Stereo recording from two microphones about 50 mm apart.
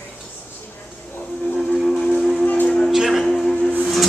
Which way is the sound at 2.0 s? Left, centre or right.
Centre.